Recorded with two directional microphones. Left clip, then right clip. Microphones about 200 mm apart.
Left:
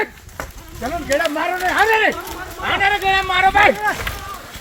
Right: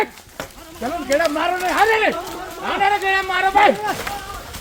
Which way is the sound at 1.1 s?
30° left (ahead or behind).